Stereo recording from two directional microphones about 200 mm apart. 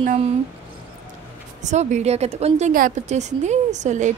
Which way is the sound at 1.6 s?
35° right (ahead or behind).